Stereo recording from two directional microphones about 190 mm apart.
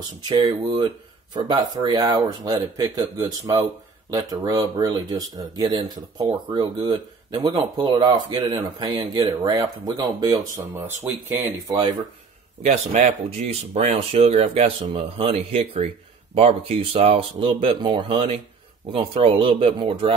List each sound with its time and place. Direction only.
0.3 s speech: 25° right (ahead or behind)
12.6 s speech: 40° right (ahead or behind)